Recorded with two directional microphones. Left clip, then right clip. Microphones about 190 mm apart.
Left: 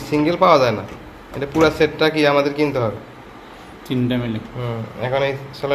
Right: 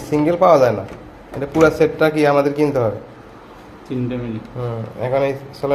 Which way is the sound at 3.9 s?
45° left (ahead or behind).